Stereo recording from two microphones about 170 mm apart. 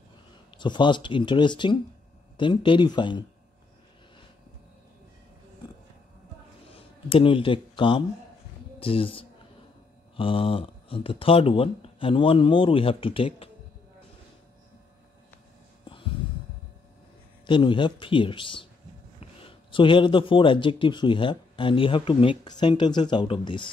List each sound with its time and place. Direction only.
0.5 s a man's voice: 25° left (ahead or behind)
6.7 s speech: 30° left (ahead or behind)
17.5 s a man's voice: 30° left (ahead or behind)